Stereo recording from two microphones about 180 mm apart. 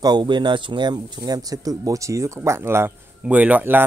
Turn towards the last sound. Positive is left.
turn(degrees=-10)  # may be behind; listen again after turning